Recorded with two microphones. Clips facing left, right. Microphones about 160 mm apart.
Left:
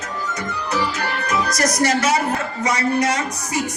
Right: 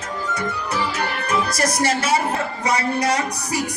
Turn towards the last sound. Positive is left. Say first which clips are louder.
# right 1 dB
turn(degrees=-35)  # may be behind; listen again after turning